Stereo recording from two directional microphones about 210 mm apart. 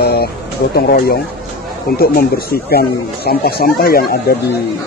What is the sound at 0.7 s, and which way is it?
Speech, 45° left (ahead or behind).